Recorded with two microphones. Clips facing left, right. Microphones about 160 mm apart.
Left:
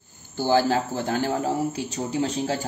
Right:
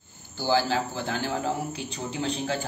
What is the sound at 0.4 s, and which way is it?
A man's voice, 45° left (ahead or behind).